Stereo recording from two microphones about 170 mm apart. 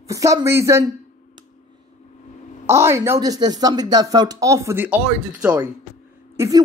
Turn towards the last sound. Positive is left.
turn(degrees=-20)  # may be behind; listen again after turning